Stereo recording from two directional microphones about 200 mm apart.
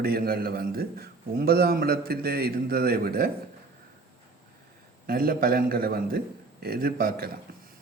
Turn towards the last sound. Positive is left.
turn(degrees=-50)  # may be behind; listen again after turning